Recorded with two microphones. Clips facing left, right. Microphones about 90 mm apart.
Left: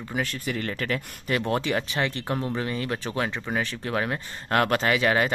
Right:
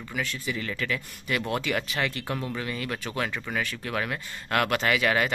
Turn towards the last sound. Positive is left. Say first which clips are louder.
# left 2 dB
turn(degrees=30)  # may be behind; listen again after turning